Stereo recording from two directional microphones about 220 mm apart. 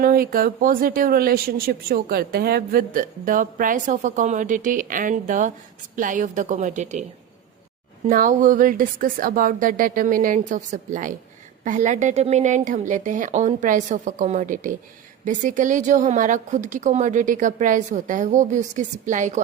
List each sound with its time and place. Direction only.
0.0 s speech: 40° right (ahead or behind)
8.0 s speech: 35° right (ahead or behind)